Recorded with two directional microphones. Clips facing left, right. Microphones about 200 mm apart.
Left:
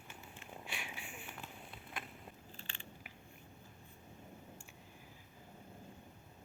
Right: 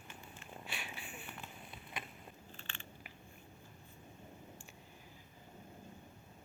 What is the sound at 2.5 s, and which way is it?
Biting, 35° left (ahead or behind).